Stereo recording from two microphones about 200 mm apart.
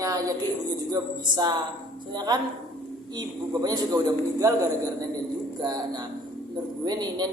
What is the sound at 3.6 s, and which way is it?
A woman's voice, 20° right (ahead or behind).